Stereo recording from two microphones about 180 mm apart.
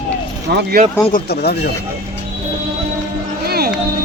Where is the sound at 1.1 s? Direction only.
65° left (ahead or behind).